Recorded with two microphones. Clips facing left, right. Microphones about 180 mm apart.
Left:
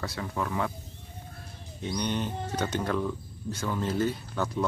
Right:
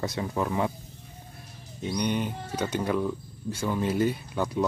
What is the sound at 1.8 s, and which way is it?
Speech, 10° right (ahead or behind).